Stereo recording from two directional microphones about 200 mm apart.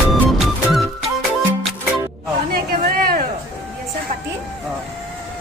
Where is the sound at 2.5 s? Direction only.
50° right (ahead or behind).